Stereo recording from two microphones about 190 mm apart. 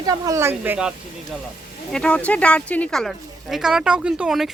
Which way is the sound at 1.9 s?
5° left (ahead or behind).